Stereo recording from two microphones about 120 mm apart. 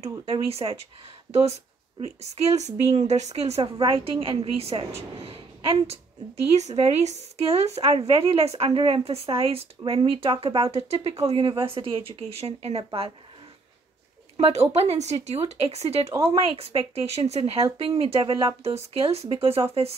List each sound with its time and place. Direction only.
0.2 s speech: 55° right (ahead or behind)
2.0 s speech: 65° right (ahead or behind)
3.6 s speech: 45° right (ahead or behind)
6.5 s speech: 65° right (ahead or behind); by 11.8 s 45° right (ahead or behind)
12.3 s speech: 55° right (ahead or behind)
14.3 s speech: 60° right (ahead or behind)